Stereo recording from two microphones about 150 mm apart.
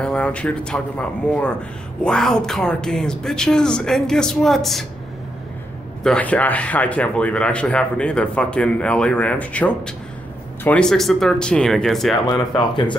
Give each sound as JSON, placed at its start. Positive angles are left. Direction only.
{"t": 0.0, "sound": "speech", "side_deg": 10}
{"t": 6.0, "sound": "speech", "side_deg": 10}
{"t": 12.3, "sound": "speech", "side_deg": 30}